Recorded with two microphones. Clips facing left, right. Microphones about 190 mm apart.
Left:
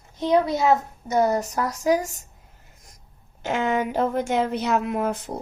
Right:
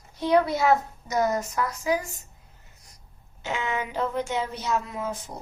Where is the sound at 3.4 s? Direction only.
50° left (ahead or behind).